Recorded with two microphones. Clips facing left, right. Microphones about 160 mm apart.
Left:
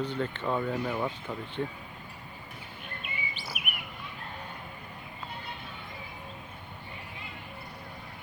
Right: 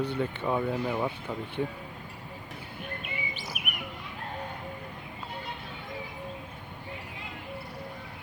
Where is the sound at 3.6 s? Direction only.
45° right (ahead or behind).